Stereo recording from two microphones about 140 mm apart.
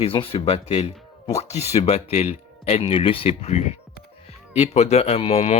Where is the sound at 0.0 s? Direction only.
40° left (ahead or behind).